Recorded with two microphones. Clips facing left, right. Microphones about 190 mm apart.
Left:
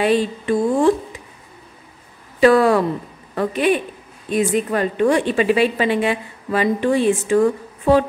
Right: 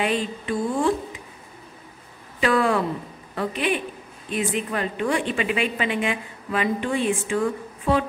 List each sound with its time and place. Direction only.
0.0 s a woman's voice: 35° left (ahead or behind)
2.4 s a woman's voice: 40° left (ahead or behind)